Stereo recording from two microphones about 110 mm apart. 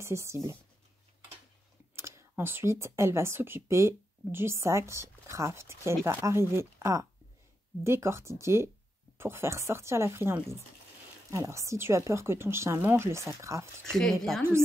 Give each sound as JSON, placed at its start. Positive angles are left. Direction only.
{"t": 0.0, "sound": "speech", "side_deg": -25}
{"t": 2.0, "sound": "speech", "side_deg": -25}
{"t": 13.8, "sound": "speech", "side_deg": 5}